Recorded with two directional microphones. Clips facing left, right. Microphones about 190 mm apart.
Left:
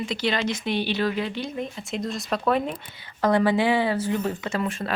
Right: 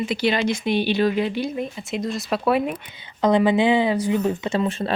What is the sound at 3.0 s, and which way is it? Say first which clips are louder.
Speech: right 3 dB; 20° right (ahead or behind).